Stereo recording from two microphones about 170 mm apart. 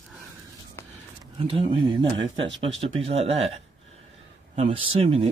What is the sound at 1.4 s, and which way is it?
Speech, 30° right (ahead or behind).